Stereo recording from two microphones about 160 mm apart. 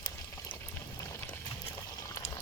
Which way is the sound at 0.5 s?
10° left (ahead or behind).